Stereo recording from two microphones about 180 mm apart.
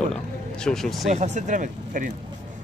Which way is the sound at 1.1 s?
40° right (ahead or behind).